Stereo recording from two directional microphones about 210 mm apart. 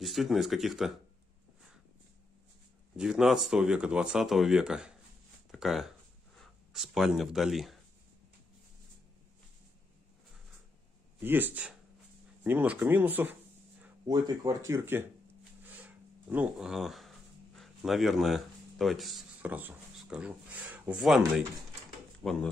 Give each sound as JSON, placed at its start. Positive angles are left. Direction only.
{"t": 0.0, "sound": "speech", "side_deg": 0}
{"t": 3.0, "sound": "speech", "side_deg": -5}
{"t": 5.5, "sound": "a sound", "side_deg": 0}
{"t": 11.1, "sound": "speech", "side_deg": -10}
{"t": 14.0, "sound": "speech", "side_deg": -20}
{"t": 15.6, "sound": "a sound", "side_deg": -10}
{"t": 22.2, "sound": "speech", "side_deg": 0}